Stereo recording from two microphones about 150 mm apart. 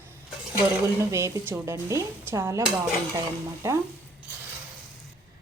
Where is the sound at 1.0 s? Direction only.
20° right (ahead or behind).